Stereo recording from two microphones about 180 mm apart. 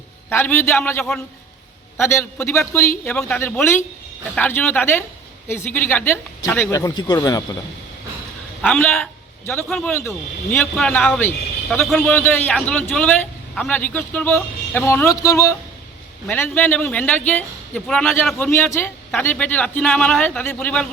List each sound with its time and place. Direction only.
0.3 s a man's voice: 10° left (ahead or behind)
8.6 s a man's voice: 5° left (ahead or behind)
11.8 s a man's voice: centre (ahead or behind)